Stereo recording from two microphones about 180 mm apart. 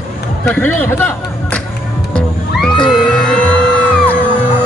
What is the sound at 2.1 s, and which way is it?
Music, 5° left (ahead or behind).